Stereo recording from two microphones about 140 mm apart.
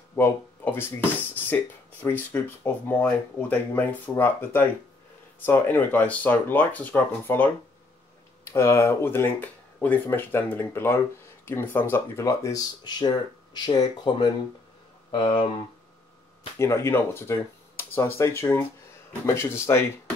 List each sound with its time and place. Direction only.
0.1 s speech: 15° left (ahead or behind); by 15.5 s 35° left (ahead or behind)
16.5 s speech: 20° left (ahead or behind)